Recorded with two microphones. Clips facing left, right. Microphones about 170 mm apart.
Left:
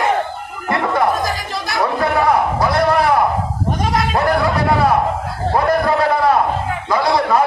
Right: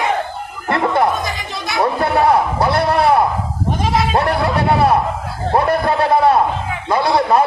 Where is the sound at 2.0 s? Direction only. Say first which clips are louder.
Right 1 dB; 30° right (ahead or behind).